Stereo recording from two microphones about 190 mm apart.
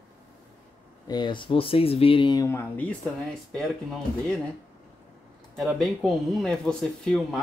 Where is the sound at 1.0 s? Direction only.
20° left (ahead or behind).